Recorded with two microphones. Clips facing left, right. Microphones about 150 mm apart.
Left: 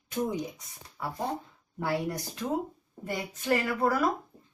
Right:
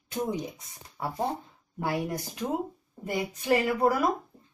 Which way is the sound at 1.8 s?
15° right (ahead or behind).